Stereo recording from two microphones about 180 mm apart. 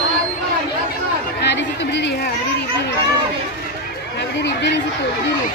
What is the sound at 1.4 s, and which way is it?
Chatter, 75° left (ahead or behind).